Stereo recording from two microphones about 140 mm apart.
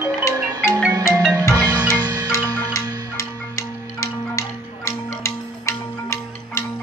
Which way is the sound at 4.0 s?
20° left (ahead or behind).